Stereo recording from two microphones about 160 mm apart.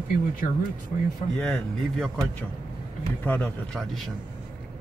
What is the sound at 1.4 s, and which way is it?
Speech, 5° left (ahead or behind).